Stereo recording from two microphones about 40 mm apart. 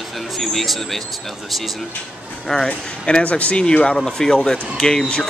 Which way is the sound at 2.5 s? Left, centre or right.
Centre.